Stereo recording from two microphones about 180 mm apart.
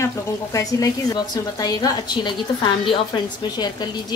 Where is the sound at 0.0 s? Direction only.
20° left (ahead or behind).